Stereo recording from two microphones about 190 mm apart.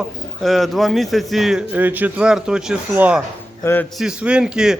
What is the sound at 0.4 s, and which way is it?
A man's voice, centre (ahead or behind).